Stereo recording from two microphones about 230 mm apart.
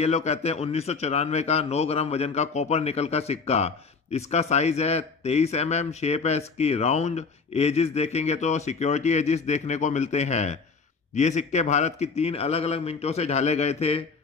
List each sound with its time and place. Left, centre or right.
0.0 s a man's voice: left